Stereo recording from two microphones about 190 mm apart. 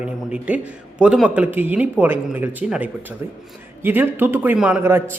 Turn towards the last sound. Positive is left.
turn(degrees=-10)  # may be behind; listen again after turning